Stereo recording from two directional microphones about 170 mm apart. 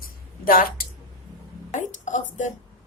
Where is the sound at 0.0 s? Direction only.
55° left (ahead or behind).